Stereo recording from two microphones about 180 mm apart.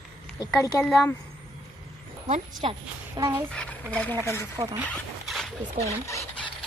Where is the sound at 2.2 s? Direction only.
45° right (ahead or behind).